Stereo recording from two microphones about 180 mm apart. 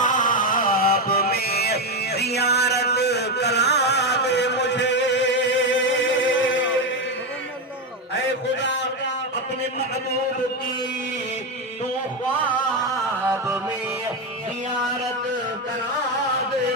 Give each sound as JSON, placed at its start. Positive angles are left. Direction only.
{"t": 0.0, "sound": "mantra", "side_deg": 45}
{"t": 13.2, "sound": "music", "side_deg": -10}